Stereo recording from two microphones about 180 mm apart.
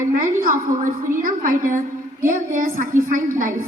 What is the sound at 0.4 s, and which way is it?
A woman's voice, 50° right (ahead or behind).